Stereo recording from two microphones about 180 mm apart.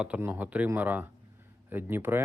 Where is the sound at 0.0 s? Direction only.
10° right (ahead or behind).